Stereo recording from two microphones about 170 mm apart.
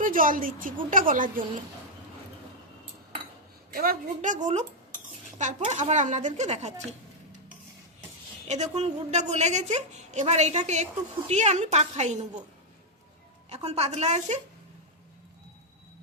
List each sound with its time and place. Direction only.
0.0 s a woman's voice: 55° right (ahead or behind)
3.7 s a woman's voice: 60° right (ahead or behind); by 6.7 s 40° right (ahead or behind)
8.4 s a woman's voice: 40° right (ahead or behind)
13.5 s a woman's voice: 40° right (ahead or behind)